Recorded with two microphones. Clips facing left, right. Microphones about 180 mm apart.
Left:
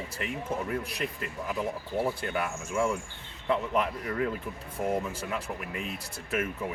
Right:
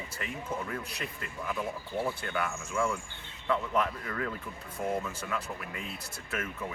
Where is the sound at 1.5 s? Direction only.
10° left (ahead or behind).